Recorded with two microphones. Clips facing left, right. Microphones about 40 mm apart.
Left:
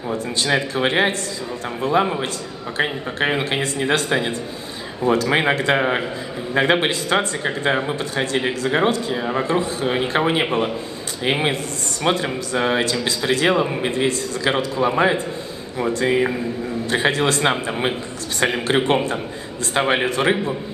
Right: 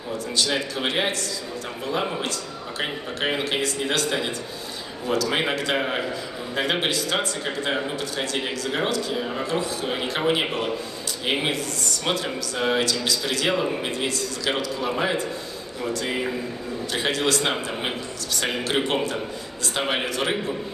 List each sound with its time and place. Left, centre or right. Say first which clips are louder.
0.1 s a man's voice: left 4 dB; left
2.8 s a man's voice: left 6 dB; left